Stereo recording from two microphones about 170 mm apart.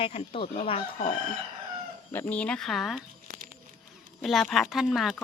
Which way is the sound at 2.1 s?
5° left (ahead or behind).